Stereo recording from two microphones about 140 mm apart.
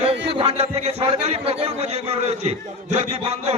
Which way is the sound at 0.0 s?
45° right (ahead or behind).